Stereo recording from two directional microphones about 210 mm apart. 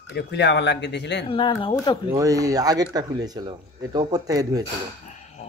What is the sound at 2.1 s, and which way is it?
Speech, 15° right (ahead or behind).